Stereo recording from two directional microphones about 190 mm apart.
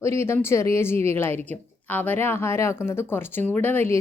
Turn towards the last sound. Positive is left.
turn(degrees=10)  # may be behind; listen again after turning